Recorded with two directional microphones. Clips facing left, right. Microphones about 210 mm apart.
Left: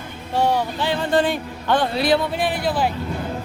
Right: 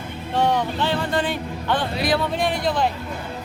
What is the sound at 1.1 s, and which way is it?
Speech, 40° left (ahead or behind).